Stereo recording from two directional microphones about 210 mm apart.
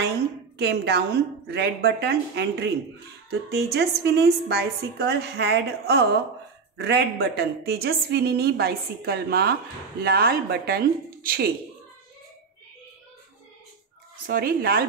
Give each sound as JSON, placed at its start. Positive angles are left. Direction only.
{"t": 0.6, "sound": "a woman's voice", "side_deg": -50}
{"t": 14.2, "sound": "a woman's voice", "side_deg": -45}